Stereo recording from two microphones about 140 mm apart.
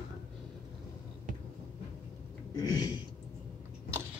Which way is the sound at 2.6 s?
30° left (ahead or behind).